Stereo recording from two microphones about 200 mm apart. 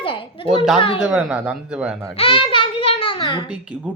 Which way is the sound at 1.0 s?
5° right (ahead or behind).